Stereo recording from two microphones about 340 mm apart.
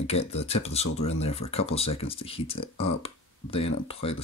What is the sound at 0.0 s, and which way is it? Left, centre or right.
Speech, centre.